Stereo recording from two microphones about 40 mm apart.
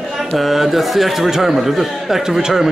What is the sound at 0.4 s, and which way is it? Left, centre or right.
A man's voice, centre.